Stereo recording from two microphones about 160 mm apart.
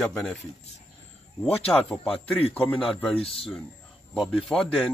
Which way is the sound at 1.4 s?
5° left (ahead or behind).